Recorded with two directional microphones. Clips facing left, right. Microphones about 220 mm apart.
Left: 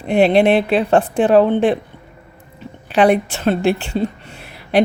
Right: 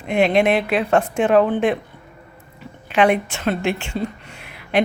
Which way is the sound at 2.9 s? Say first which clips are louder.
Left 3 dB; 35° left (ahead or behind).